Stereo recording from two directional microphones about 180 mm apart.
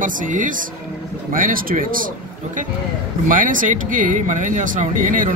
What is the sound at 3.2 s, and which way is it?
Speech, 50° right (ahead or behind).